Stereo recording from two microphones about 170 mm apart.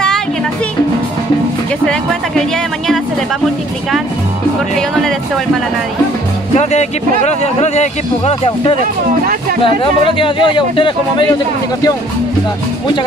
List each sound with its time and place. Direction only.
6.5 s speech: 40° left (ahead or behind)
10.0 s speech: 30° left (ahead or behind)